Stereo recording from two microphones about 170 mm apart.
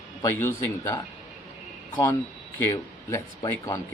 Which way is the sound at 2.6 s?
15° left (ahead or behind).